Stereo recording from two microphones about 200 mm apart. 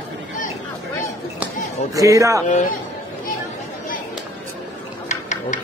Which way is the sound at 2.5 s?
40° left (ahead or behind).